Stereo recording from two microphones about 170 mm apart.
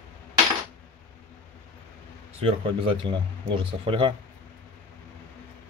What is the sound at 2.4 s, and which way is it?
Speech, 30° right (ahead or behind).